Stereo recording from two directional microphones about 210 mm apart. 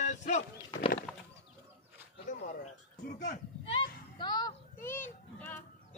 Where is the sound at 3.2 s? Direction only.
35° left (ahead or behind).